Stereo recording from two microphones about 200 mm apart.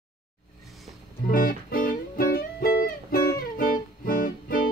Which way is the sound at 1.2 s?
45° left (ahead or behind).